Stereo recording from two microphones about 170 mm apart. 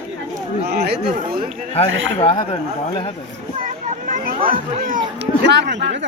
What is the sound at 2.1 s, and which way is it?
Speech, 35° left (ahead or behind).